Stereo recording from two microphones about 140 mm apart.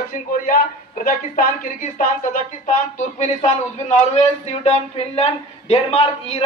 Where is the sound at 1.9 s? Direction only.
65° left (ahead or behind).